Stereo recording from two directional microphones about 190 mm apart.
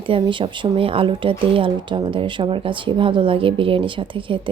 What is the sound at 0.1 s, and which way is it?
Speech, 25° right (ahead or behind).